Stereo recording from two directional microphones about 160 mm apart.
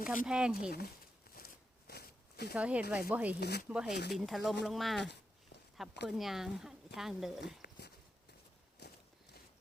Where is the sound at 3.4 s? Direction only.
90° left.